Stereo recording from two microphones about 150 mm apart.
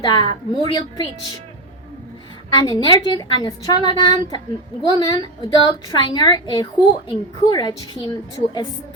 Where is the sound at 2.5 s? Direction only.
30° left (ahead or behind).